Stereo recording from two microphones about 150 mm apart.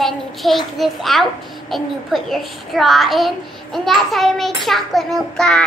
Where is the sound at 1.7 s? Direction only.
Centre (ahead or behind).